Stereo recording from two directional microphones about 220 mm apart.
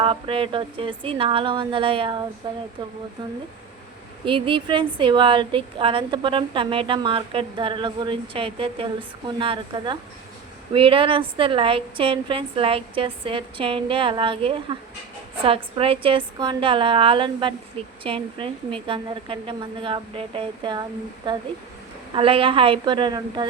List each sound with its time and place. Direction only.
0.0 s a woman's voice: 25° right (ahead or behind)
4.3 s a woman's voice: 25° right (ahead or behind)